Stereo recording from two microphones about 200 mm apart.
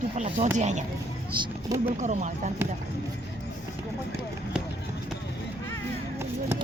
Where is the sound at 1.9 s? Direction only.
35° right (ahead or behind).